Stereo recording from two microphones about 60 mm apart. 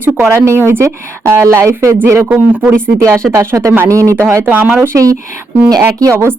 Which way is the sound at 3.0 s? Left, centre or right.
Right.